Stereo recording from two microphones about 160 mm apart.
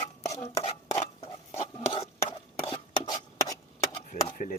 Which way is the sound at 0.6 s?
40° left (ahead or behind).